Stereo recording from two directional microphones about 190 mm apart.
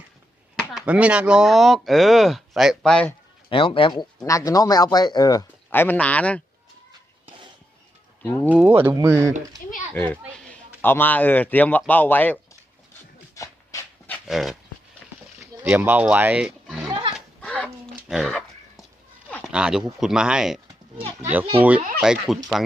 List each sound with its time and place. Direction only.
0.6 s speech: 5° right (ahead or behind)
3.5 s speech: 25° left (ahead or behind); by 6.4 s 5° left (ahead or behind)
8.2 s speech: 15° left (ahead or behind)
8.8 s speech: 10° right (ahead or behind)
9.9 s speech: 5° left (ahead or behind)
13.3 s dog: 15° left (ahead or behind)
14.3 s speech: centre (ahead or behind)
15.6 s speech: 10° right (ahead or behind)
16.9 s roaring cats: 25° right (ahead or behind)
17.2 s a sound: 5° left (ahead or behind)
19.3 s speech: 5° right (ahead or behind)